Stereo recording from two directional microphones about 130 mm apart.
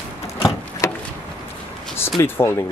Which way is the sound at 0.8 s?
25° left (ahead or behind).